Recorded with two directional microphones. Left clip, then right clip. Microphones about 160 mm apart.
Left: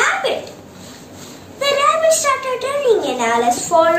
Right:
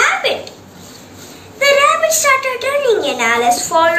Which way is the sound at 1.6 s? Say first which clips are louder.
Right 4 dB; 25° left (ahead or behind).